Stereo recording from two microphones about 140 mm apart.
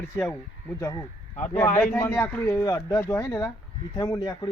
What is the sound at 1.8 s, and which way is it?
Speech, 15° left (ahead or behind).